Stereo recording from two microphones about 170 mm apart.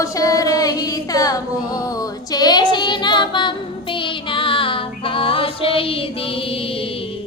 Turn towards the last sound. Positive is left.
turn(degrees=35)  # may be behind; listen again after turning